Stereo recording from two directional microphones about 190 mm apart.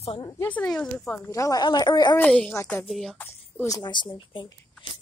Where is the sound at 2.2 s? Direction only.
10° left (ahead or behind).